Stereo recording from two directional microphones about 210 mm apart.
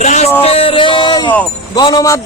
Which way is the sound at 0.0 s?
35° left (ahead or behind).